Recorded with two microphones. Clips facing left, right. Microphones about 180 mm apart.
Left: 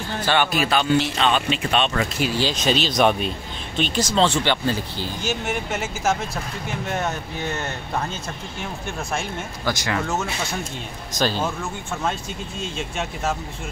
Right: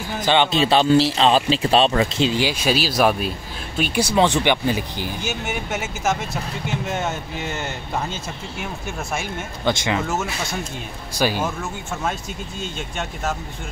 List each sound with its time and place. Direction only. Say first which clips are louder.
0.1 s speech: right 3 dB; 15° right (ahead or behind)
2.4 s speech: right 1 dB; 10° right (ahead or behind)
5.2 s speech: left 4 dB; 5° right (ahead or behind)
9.7 s speech: right 3 dB; 25° right (ahead or behind)
11.1 s speech: right 1 dB; 10° right (ahead or behind)